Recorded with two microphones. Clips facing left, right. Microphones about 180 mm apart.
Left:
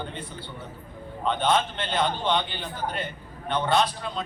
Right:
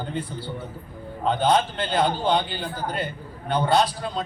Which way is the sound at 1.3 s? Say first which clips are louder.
Right 3 dB; 35° right (ahead or behind).